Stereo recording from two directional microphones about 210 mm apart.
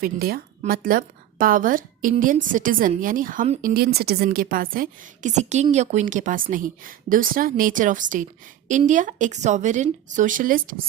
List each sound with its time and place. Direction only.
0.0 s a woman's voice: 45° right (ahead or behind)
3.8 s a woman's voice: 45° right (ahead or behind)